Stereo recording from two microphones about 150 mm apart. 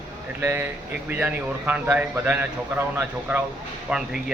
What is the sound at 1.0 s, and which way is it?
A man's voice, 10° right (ahead or behind).